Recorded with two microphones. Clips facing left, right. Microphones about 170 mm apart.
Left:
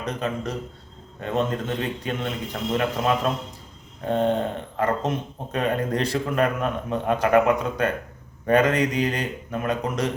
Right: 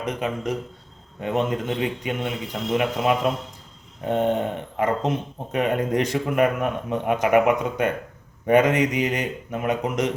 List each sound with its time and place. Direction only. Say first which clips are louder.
0.0 s speech: right 1 dB; 15° right (ahead or behind)